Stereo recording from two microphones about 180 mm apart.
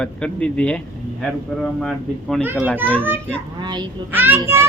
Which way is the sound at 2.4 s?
10° right (ahead or behind).